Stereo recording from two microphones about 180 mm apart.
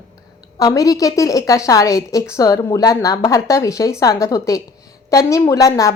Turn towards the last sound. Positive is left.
turn(degrees=20)  # may be behind; listen again after turning